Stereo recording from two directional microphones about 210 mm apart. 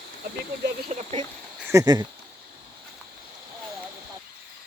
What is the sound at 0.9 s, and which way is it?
Speech, 35° right (ahead or behind).